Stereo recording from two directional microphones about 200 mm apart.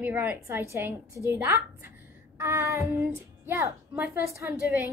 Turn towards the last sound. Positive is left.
turn(degrees=-15)  # may be behind; listen again after turning